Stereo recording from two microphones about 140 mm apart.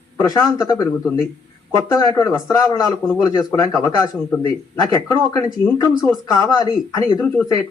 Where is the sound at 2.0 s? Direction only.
25° left (ahead or behind).